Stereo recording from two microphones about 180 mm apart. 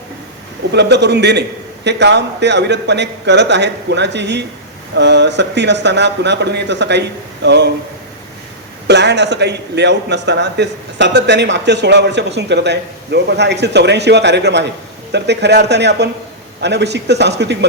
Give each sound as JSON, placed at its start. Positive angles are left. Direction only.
{"t": 0.7, "sound": "a man's voice", "side_deg": -70}
{"t": 8.9, "sound": "a man's voice", "side_deg": -70}